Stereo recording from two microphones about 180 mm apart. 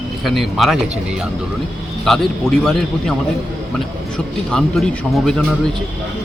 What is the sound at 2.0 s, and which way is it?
A man's voice, centre (ahead or behind).